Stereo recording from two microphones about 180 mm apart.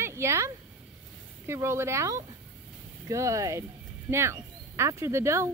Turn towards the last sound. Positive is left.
turn(degrees=-15)  # may be behind; listen again after turning